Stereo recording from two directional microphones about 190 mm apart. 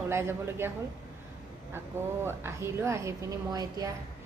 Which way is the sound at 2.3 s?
15° right (ahead or behind).